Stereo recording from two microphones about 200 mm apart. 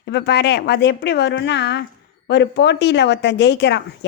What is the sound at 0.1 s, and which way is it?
A woman's voice, 55° left (ahead or behind).